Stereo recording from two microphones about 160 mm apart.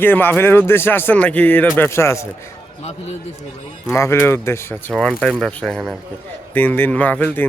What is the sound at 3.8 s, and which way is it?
Speech, 15° left (ahead or behind).